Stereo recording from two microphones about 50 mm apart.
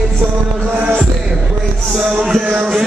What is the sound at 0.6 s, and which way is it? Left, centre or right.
Music, right.